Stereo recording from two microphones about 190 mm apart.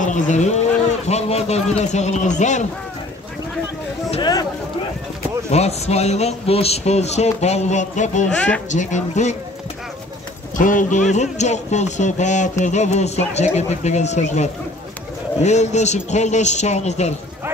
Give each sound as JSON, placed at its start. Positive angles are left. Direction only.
{"t": 0.0, "sound": "speech", "side_deg": 40}
{"t": 4.1, "sound": "speech", "side_deg": 20}
{"t": 5.5, "sound": "speech", "side_deg": 35}
{"t": 10.6, "sound": "speech", "side_deg": 45}